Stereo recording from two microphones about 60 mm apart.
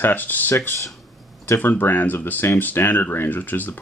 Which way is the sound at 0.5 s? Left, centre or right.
Left.